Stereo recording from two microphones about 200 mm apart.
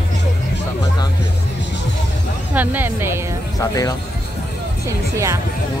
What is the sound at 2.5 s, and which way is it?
Music, 10° right (ahead or behind).